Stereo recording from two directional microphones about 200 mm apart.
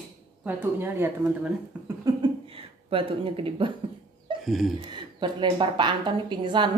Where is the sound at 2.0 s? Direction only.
25° right (ahead or behind).